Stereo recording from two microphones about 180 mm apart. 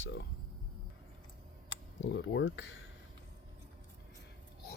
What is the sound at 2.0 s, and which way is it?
Speech, 85° left.